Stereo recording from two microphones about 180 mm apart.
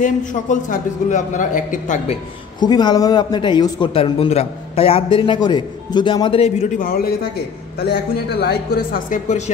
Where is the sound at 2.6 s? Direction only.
25° left (ahead or behind).